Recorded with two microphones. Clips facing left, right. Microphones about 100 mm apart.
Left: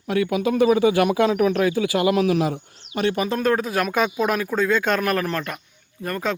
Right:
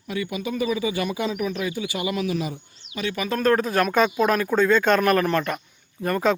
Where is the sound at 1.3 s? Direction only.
60° left (ahead or behind).